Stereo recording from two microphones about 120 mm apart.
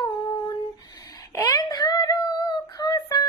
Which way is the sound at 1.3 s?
30° left (ahead or behind).